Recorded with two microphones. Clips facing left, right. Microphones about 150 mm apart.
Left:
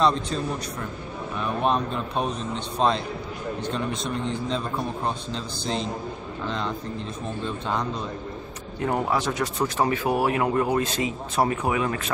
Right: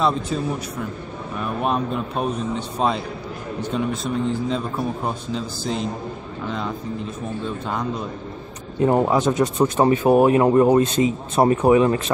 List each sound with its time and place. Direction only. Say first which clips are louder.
0.0 s a man's voice: right 1 dB; 10° right (ahead or behind)
8.8 s speech: right 7 dB; 25° right (ahead or behind)